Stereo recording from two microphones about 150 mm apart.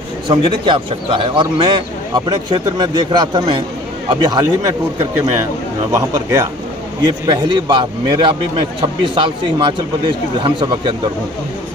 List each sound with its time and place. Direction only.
0.3 s speech: 35° right (ahead or behind)
5.9 s speech: 20° right (ahead or behind)